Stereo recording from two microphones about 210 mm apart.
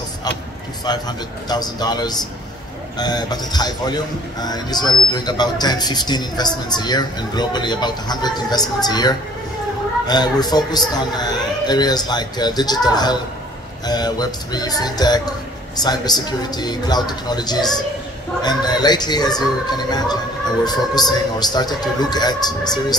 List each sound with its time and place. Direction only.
0.8 s a man's voice: 20° left (ahead or behind)